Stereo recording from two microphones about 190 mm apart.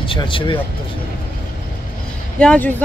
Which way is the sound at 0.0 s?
25° left (ahead or behind).